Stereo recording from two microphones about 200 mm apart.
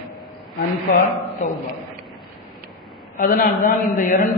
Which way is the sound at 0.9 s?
40° left (ahead or behind).